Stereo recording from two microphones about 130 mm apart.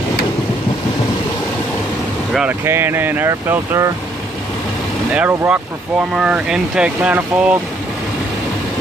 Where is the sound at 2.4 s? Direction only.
15° right (ahead or behind).